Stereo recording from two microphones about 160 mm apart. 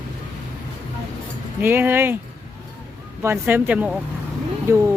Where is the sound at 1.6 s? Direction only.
15° right (ahead or behind).